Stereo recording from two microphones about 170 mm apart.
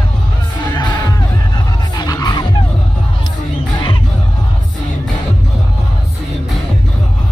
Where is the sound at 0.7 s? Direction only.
25° left (ahead or behind).